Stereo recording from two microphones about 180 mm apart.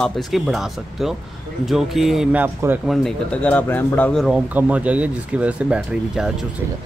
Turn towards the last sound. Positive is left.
turn(degrees=-5)  # may be behind; listen again after turning